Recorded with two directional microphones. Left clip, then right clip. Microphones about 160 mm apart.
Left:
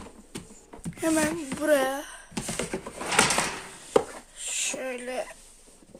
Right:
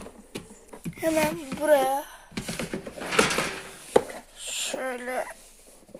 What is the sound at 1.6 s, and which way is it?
Speech, 20° left (ahead or behind).